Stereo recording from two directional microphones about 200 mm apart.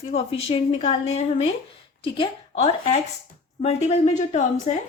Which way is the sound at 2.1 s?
30° left (ahead or behind).